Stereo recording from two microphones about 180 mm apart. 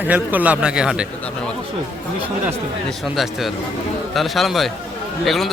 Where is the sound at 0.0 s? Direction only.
10° right (ahead or behind).